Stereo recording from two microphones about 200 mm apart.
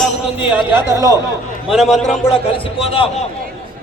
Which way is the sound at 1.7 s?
Centre (ahead or behind).